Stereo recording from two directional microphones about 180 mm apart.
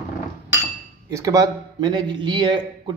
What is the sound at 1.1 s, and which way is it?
Speech, 20° right (ahead or behind).